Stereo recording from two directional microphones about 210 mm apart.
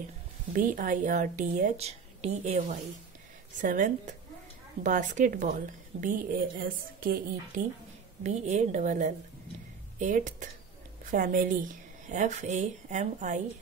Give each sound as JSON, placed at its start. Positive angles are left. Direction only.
{"t": 0.5, "sound": "a woman's voice", "side_deg": -40}